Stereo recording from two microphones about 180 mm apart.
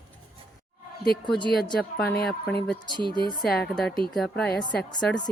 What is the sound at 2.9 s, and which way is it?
Speech, 25° right (ahead or behind).